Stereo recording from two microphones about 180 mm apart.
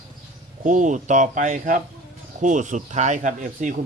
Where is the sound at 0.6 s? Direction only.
45° right (ahead or behind).